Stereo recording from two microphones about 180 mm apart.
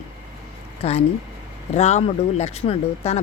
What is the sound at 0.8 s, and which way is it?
Speech, 35° left (ahead or behind).